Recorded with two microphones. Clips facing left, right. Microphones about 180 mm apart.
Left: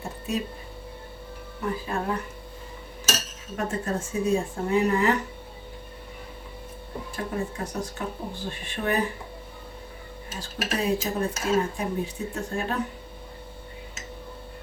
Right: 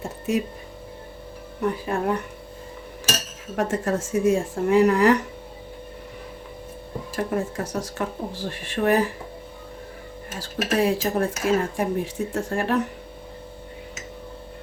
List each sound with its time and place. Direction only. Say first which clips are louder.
1.7 s speech: right 4 dB; 65° right (ahead or behind)
3.5 s speech: right 5 dB; 85° right
7.1 s speech: right 5 dB; 90° right
10.3 s speech: right 6 dB; 90° right